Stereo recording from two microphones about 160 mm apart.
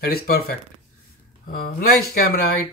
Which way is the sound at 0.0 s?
75° left (ahead or behind).